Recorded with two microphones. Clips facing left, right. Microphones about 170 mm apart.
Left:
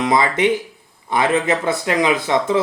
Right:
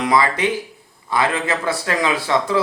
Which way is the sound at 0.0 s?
25° left (ahead or behind).